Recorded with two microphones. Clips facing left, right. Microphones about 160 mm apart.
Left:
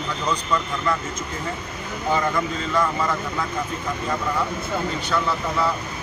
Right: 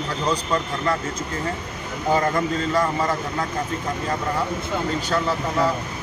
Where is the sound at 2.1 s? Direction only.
40° right (ahead or behind).